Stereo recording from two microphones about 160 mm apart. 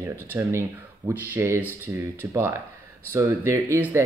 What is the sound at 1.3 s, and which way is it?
Speech, 15° right (ahead or behind).